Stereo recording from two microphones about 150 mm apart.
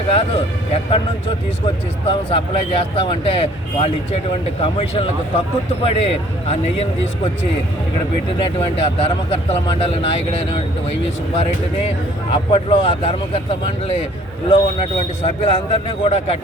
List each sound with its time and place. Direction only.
0.1 s speech: 40° left (ahead or behind)
8.7 s speech: 40° left (ahead or behind)
12.3 s speech: 35° left (ahead or behind)
14.5 s speech: 40° left (ahead or behind)